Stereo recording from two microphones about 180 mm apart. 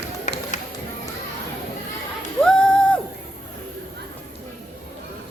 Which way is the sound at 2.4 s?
5° left (ahead or behind).